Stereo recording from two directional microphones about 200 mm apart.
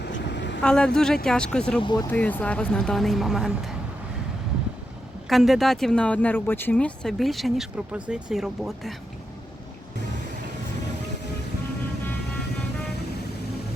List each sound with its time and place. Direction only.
0.0 s vehicle: 60° left (ahead or behind)
0.6 s speech: 5° left (ahead or behind)
1.8 s speech: 20° left (ahead or behind)
2.0 s speech: 10° left (ahead or behind)
5.3 s speech: centre (ahead or behind)